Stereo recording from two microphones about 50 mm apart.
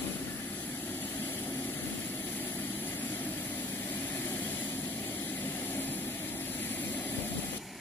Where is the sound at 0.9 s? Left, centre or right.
Left.